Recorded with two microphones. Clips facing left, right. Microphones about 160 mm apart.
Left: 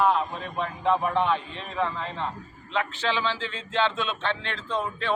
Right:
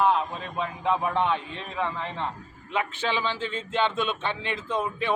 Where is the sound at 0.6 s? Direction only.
15° right (ahead or behind).